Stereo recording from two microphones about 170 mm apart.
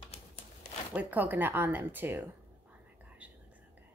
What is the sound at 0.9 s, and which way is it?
Speech, 10° right (ahead or behind).